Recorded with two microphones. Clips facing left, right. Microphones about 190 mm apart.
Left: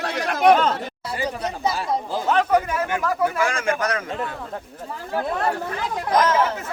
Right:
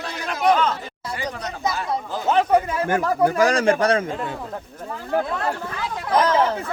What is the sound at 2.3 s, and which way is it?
Speech, 25° right (ahead or behind).